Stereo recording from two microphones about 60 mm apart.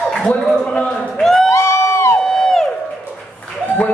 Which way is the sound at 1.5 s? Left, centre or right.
Left.